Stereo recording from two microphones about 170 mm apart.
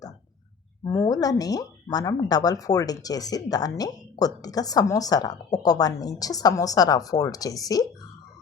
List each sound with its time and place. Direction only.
0.9 s speech: 20° left (ahead or behind)